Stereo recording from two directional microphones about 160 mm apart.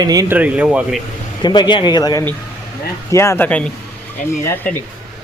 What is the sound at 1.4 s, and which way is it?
Speech, 25° left (ahead or behind).